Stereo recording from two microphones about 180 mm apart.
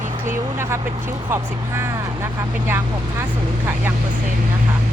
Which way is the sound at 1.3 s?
15° right (ahead or behind).